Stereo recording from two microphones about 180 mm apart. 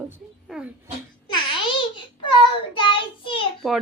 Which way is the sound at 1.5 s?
25° left (ahead or behind).